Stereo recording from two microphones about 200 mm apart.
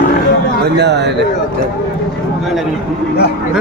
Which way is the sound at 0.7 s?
60° right (ahead or behind).